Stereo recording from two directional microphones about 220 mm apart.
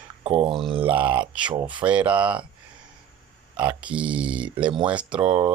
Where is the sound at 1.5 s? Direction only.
20° right (ahead or behind).